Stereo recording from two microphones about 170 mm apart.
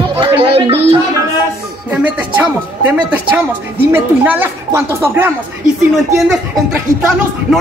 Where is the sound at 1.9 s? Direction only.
10° right (ahead or behind).